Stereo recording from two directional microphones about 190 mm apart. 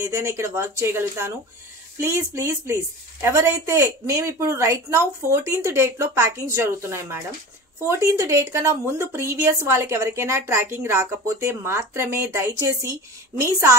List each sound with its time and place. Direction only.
0.0 s a woman's voice: 15° right (ahead or behind)